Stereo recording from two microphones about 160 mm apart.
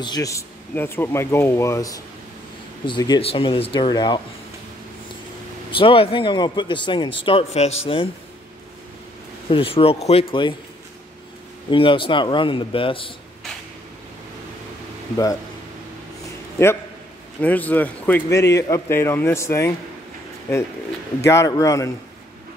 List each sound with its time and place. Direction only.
0.0 s a man's voice: 25° left (ahead or behind)
5.7 s speech: 35° left (ahead or behind)
9.5 s speech: 35° left (ahead or behind)
11.7 s speech: 35° left (ahead or behind)
17.4 s a man's voice: 10° left (ahead or behind)
21.2 s a man's voice: 15° left (ahead or behind)